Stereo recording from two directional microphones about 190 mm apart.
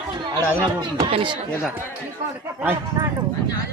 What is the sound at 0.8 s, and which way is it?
Speech, 25° right (ahead or behind).